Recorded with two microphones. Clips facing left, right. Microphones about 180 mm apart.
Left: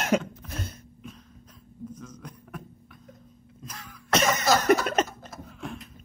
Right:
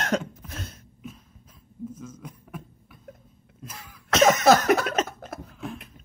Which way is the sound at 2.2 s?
5° right (ahead or behind).